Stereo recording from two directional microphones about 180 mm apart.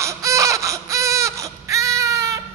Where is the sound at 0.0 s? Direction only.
15° right (ahead or behind).